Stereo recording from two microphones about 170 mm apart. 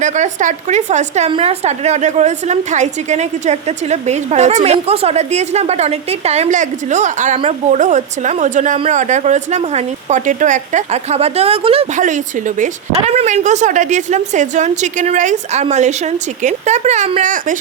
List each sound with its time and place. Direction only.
0.0 s a woman's voice: 45° right (ahead or behind)
12.0 s a woman's voice: 50° right (ahead or behind)